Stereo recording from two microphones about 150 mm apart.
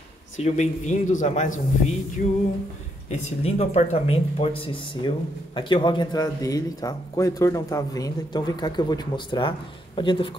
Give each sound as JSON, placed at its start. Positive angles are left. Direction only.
{"t": 0.4, "sound": "speech", "side_deg": 50}
{"t": 2.2, "sound": "a sound", "side_deg": 65}
{"t": 3.1, "sound": "speech", "side_deg": 45}
{"t": 5.0, "sound": "a man's voice", "side_deg": 30}